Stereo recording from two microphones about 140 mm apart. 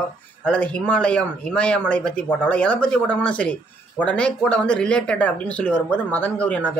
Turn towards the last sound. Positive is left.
turn(degrees=10)  # may be behind; listen again after turning